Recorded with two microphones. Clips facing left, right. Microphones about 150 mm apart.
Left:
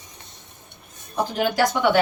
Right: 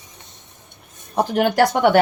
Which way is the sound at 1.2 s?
60° right (ahead or behind).